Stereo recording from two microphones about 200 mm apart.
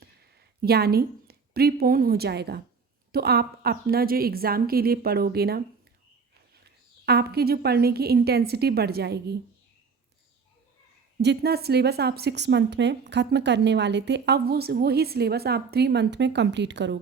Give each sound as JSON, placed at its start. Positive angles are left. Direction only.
{"t": 0.0, "sound": "a woman's voice", "side_deg": -50}
{"t": 6.7, "sound": "a woman's voice", "side_deg": -55}
{"t": 11.2, "sound": "a woman's voice", "side_deg": -55}